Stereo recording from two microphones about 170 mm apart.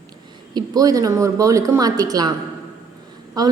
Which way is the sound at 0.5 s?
20° right (ahead or behind).